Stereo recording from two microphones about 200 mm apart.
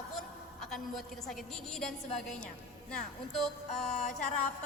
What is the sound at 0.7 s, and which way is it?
A woman's voice, centre (ahead or behind).